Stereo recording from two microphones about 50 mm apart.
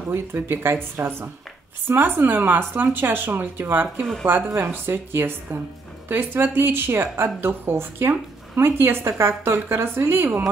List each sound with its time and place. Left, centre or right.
0.1 s speech: right